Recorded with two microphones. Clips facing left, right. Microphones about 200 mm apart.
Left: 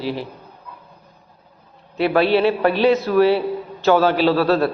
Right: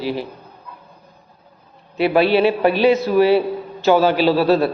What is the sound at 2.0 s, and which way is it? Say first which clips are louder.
A man's voice: right 1 dB; 10° right (ahead or behind).